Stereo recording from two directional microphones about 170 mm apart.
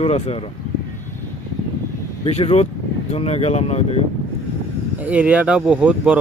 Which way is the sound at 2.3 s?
40° left (ahead or behind).